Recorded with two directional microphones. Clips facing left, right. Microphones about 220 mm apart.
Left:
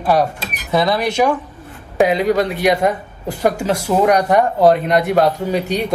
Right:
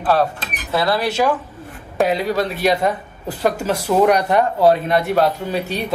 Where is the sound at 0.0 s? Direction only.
15° left (ahead or behind).